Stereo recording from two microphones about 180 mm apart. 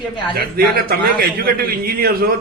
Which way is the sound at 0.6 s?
55° right (ahead or behind).